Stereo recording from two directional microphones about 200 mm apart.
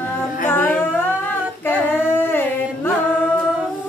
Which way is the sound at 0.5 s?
10° left (ahead or behind).